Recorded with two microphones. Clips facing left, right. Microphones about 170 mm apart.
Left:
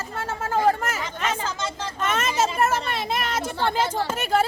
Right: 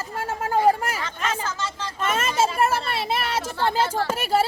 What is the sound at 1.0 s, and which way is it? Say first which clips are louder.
Speech: left 1 dB; 10° left (ahead or behind).